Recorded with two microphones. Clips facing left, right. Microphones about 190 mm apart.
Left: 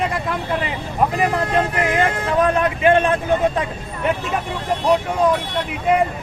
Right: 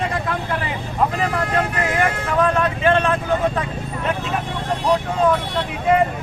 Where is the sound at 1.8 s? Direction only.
20° left (ahead or behind).